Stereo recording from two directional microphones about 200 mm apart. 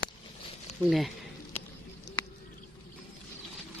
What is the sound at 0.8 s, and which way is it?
Speech, centre (ahead or behind).